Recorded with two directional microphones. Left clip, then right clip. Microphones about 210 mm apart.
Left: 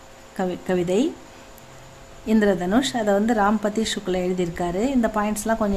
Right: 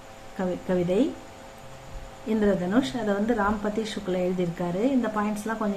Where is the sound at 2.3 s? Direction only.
50° left (ahead or behind).